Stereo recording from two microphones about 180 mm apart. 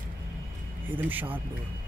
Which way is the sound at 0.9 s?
10° right (ahead or behind).